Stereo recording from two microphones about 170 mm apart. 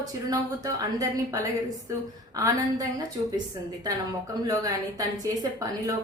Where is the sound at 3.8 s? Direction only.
20° right (ahead or behind).